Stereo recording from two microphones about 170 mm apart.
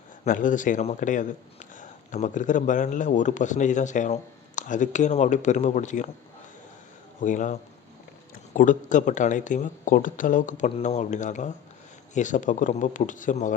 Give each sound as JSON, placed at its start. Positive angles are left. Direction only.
{"t": 0.3, "sound": "speech", "side_deg": 50}
{"t": 7.2, "sound": "speech", "side_deg": 45}
{"t": 8.5, "sound": "speech", "side_deg": 50}